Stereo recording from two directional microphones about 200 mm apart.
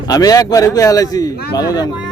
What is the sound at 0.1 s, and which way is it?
A man's voice, 15° left (ahead or behind).